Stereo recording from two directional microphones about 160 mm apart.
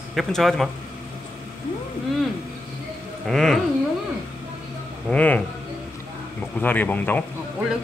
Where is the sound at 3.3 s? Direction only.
Centre (ahead or behind).